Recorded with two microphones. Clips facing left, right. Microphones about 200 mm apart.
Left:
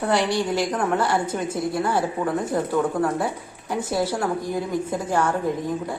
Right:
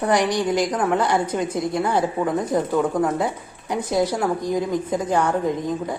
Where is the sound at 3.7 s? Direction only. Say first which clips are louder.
Right 3 dB; 15° right (ahead or behind).